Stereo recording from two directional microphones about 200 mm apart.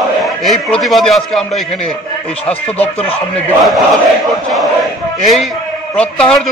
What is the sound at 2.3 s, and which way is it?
Speech, 30° left (ahead or behind).